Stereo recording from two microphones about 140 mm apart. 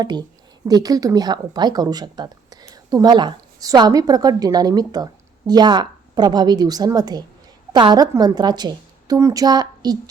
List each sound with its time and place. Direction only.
0.0 s a woman's voice: 30° right (ahead or behind)